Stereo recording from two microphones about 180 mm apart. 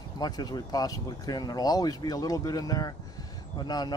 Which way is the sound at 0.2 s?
20° left (ahead or behind).